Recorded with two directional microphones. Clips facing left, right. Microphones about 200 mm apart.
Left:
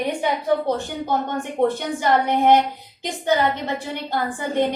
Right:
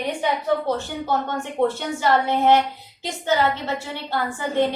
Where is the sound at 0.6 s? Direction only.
15° left (ahead or behind).